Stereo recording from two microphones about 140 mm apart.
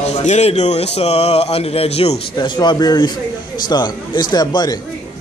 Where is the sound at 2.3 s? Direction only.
30° left (ahead or behind).